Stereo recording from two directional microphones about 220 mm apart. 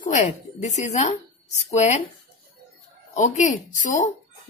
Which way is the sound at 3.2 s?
35° left (ahead or behind).